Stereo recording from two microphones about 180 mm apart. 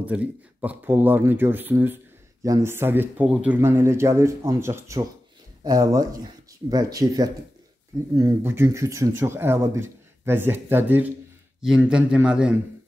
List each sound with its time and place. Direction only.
0.0 s a man's voice: 5° right (ahead or behind)